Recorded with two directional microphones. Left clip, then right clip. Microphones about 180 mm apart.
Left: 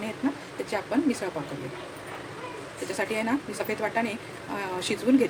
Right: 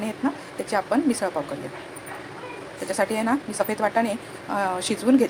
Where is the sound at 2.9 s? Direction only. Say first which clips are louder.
Right 5 dB; 15° right (ahead or behind).